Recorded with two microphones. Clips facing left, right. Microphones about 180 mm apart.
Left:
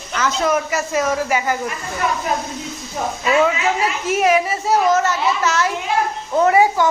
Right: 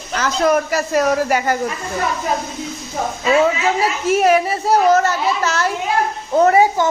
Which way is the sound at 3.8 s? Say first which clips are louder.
Right 5 dB; 35° right (ahead or behind).